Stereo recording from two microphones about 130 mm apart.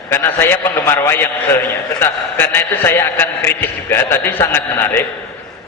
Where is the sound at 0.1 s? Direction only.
15° left (ahead or behind).